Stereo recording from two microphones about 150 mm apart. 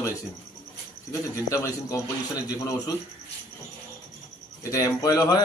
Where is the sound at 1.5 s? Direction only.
20° left (ahead or behind).